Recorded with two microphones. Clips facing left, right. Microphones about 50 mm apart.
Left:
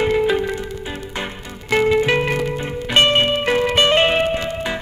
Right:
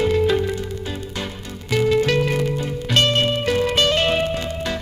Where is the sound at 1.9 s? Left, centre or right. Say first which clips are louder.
Left 1 dB; left.